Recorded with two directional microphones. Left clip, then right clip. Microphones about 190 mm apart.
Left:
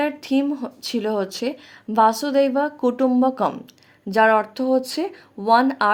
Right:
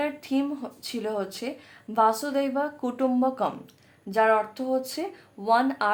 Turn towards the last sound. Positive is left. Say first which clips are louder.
# left 6 dB
turn(degrees=35)  # may be behind; listen again after turning